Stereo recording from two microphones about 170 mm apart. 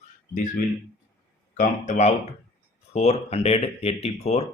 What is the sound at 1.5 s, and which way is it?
Speech, 45° left (ahead or behind).